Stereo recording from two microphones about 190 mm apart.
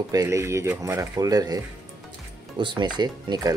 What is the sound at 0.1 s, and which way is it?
Speech, 15° right (ahead or behind).